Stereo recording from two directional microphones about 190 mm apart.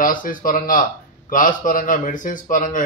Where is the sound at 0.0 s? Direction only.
45° left (ahead or behind).